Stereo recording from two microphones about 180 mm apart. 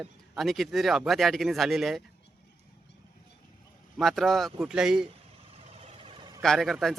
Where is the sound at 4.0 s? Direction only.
Centre (ahead or behind).